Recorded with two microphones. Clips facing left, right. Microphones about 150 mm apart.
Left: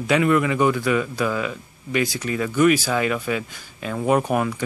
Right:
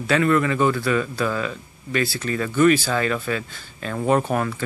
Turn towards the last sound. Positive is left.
turn(degrees=15)  # may be behind; listen again after turning